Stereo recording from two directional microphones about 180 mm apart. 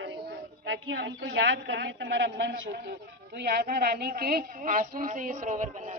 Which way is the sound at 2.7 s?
65° right (ahead or behind).